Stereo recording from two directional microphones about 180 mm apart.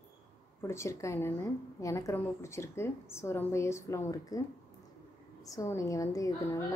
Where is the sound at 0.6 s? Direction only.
15° left (ahead or behind).